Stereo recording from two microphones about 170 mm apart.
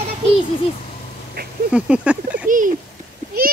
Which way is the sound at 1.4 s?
65° right (ahead or behind).